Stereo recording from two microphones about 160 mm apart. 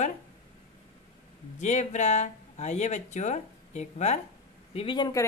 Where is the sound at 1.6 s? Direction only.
45° left (ahead or behind).